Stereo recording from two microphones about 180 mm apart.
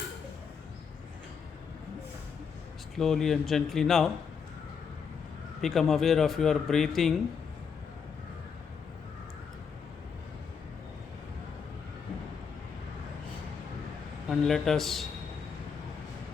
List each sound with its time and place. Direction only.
2.9 s speech: centre (ahead or behind)
5.5 s speech: centre (ahead or behind)
14.3 s speech: centre (ahead or behind)